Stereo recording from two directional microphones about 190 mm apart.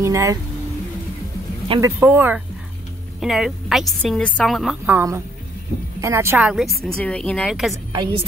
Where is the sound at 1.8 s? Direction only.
10° right (ahead or behind).